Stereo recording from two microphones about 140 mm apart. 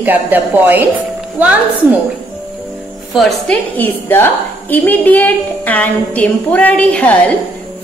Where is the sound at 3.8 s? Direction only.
15° left (ahead or behind).